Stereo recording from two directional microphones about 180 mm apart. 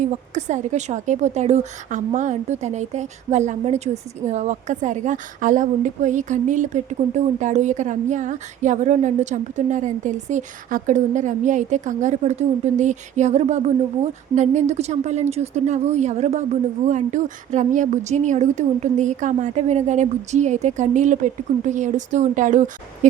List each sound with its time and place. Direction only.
0.0 s a woman's voice: 40° right (ahead or behind)